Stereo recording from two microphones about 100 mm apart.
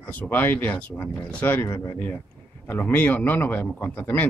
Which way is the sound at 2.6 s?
15° left (ahead or behind).